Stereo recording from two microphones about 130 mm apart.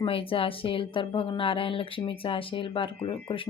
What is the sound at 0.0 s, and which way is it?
Speech, 45° left (ahead or behind).